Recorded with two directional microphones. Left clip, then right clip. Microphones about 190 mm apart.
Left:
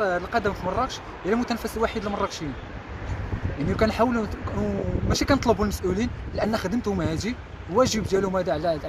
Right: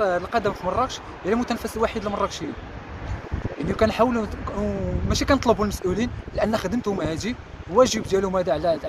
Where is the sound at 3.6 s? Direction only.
15° right (ahead or behind).